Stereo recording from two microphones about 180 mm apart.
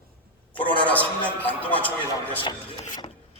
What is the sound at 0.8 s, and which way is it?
A man's voice, 10° left (ahead or behind).